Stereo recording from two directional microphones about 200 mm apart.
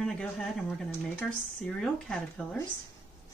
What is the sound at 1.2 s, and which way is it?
Speech, 5° left (ahead or behind).